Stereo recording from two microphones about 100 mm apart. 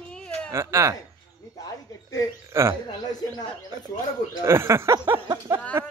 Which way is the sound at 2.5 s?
25° right (ahead or behind).